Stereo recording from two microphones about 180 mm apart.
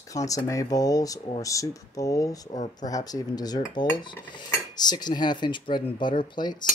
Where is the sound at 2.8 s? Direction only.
20° left (ahead or behind).